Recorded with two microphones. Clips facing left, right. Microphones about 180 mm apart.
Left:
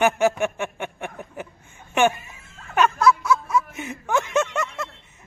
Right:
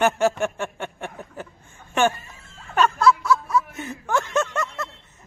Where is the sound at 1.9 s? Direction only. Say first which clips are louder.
Left 1 dB; 20° left (ahead or behind).